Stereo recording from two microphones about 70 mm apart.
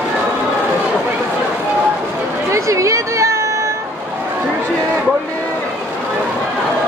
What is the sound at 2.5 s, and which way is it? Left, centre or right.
Music, right.